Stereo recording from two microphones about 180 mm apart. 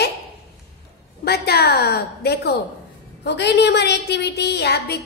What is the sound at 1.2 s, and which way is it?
A woman's voice, 60° left (ahead or behind).